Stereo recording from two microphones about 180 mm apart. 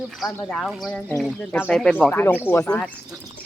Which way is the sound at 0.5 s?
Centre (ahead or behind).